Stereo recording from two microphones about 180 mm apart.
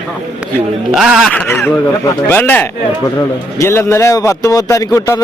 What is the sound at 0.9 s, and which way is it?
A man's voice, centre (ahead or behind).